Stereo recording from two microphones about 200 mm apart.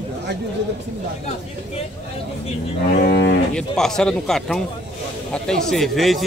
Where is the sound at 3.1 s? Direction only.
60° left (ahead or behind).